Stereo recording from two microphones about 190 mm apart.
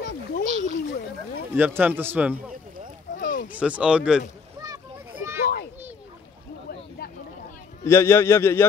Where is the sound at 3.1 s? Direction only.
45° left (ahead or behind).